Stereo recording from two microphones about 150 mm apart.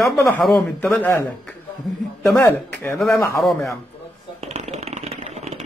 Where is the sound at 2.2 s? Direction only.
10° left (ahead or behind).